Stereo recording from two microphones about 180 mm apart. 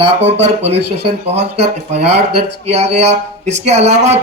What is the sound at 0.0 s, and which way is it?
Speech, 35° right (ahead or behind).